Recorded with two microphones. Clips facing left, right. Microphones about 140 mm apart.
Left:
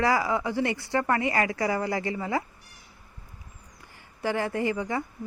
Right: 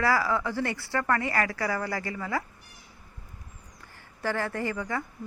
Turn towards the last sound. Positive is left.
turn(degrees=20)  # may be behind; listen again after turning